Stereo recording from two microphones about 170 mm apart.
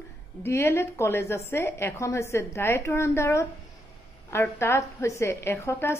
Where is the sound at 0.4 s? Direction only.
15° left (ahead or behind).